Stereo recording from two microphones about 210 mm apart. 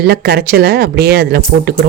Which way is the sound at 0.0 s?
50° right (ahead or behind).